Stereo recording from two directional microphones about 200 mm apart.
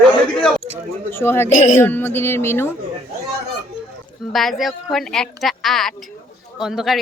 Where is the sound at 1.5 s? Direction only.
40° left (ahead or behind).